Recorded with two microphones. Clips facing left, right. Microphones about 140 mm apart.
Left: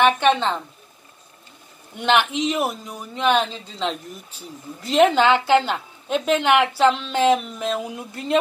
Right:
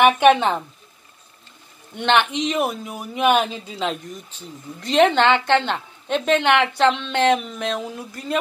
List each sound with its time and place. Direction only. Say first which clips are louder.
0.0 s speech: right 3 dB; 10° right (ahead or behind)
2.0 s speech: even; 5° left (ahead or behind)
4.3 s speech: even; 10° left (ahead or behind)
7.9 s speech: left 3 dB; 20° left (ahead or behind)